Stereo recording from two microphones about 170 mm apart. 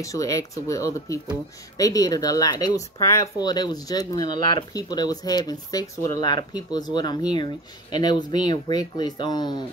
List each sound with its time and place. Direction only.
0.0 s speech: 20° left (ahead or behind)